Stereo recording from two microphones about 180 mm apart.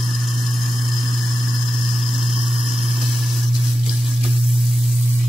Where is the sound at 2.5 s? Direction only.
Centre (ahead or behind).